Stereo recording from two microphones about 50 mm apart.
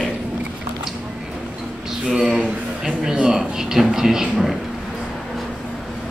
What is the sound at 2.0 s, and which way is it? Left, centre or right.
Speech, centre.